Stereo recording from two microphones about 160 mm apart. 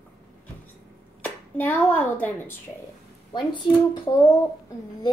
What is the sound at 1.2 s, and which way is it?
Speech, 10° left (ahead or behind).